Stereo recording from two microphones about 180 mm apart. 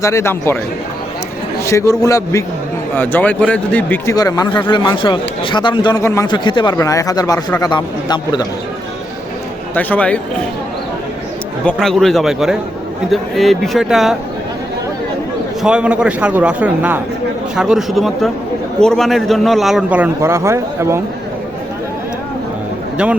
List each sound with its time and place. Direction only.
0.0 s a man's voice: 15° left (ahead or behind)
1.6 s a man's voice: 15° left (ahead or behind)
9.7 s a man's voice: 10° left (ahead or behind)
11.6 s a man's voice: 5° left (ahead or behind)
15.6 s a man's voice: 5° right (ahead or behind)